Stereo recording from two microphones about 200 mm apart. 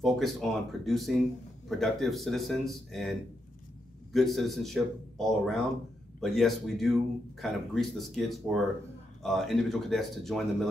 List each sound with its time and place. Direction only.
0.0 s a man's voice: centre (ahead or behind)